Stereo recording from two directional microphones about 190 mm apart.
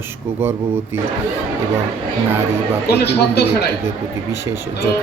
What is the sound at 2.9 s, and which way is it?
Speech, 60° left (ahead or behind).